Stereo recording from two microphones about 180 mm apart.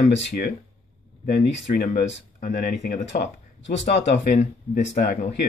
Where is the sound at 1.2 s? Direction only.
55° left (ahead or behind).